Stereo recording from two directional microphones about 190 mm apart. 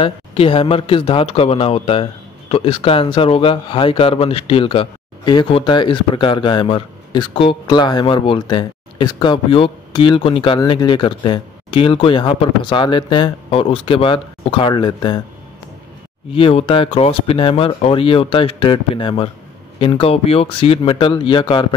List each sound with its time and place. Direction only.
0.0 s speech: 30° left (ahead or behind)
16.3 s speech: 30° left (ahead or behind)